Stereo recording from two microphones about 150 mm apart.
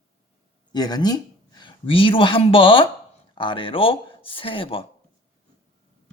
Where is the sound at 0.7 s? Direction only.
25° left (ahead or behind).